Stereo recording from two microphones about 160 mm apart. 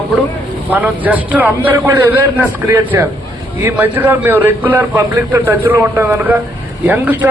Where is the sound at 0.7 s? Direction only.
10° right (ahead or behind).